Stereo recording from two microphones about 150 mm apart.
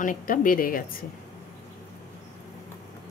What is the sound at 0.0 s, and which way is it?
Speech, 65° left (ahead or behind).